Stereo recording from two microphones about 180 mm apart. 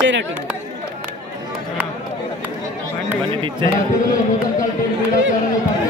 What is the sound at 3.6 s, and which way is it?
Speech, 25° right (ahead or behind).